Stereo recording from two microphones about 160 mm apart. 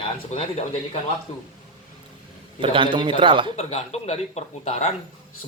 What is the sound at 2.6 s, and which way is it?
Speech, 30° right (ahead or behind).